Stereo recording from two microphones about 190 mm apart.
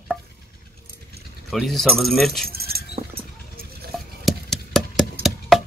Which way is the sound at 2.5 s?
55° right (ahead or behind).